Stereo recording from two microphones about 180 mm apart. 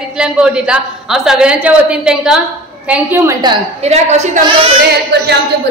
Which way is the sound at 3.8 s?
35° right (ahead or behind).